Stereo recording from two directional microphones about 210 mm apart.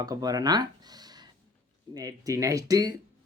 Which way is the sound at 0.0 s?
15° right (ahead or behind).